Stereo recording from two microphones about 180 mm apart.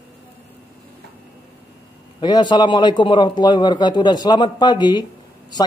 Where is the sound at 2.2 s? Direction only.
25° left (ahead or behind).